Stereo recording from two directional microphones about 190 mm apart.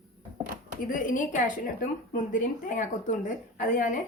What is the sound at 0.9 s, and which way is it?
A woman's voice, 45° left (ahead or behind).